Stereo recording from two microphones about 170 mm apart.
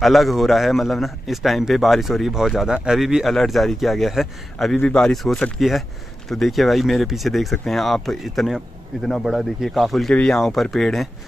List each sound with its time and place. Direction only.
0.0 s a man's voice: centre (ahead or behind)